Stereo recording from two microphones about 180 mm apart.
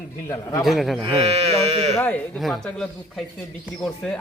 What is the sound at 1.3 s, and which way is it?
Speech, 35° right (ahead or behind).